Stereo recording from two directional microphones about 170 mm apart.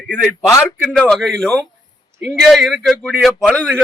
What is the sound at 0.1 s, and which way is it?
Speech, 15° left (ahead or behind).